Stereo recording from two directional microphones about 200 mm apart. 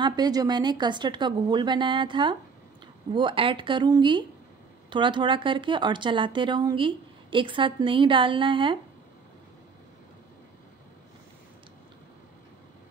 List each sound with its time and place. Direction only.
0.0 s speech: 20° right (ahead or behind)